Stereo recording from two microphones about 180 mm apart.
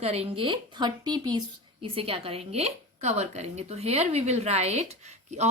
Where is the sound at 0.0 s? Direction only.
35° right (ahead or behind).